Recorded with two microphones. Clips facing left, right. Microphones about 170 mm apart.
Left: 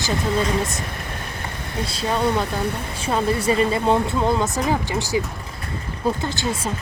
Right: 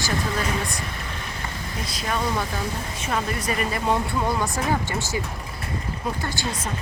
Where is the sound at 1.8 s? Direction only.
30° left (ahead or behind).